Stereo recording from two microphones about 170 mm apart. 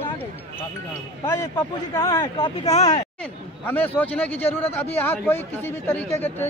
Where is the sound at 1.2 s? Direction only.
20° left (ahead or behind).